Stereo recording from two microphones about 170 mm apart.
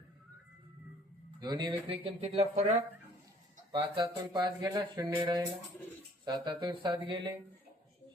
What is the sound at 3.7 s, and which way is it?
Speech, 30° right (ahead or behind).